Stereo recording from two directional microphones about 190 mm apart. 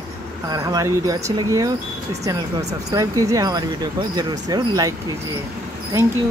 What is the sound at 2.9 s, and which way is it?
Speech, 20° right (ahead or behind).